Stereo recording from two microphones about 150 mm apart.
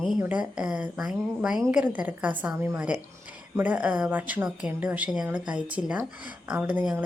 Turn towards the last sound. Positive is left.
turn(degrees=-10)  # may be behind; listen again after turning